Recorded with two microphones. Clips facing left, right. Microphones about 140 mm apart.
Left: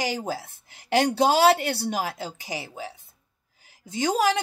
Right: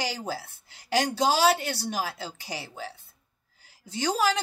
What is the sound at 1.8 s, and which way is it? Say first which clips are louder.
Speech: left 3 dB; 20° left (ahead or behind).